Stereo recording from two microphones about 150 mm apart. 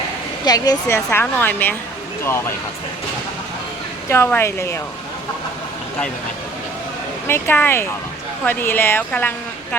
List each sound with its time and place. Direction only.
0.4 s speech: 25° left (ahead or behind)
0.9 s a woman's voice: 15° left (ahead or behind)
4.1 s a woman's voice: 15° left (ahead or behind)
7.3 s a woman's voice: 15° left (ahead or behind)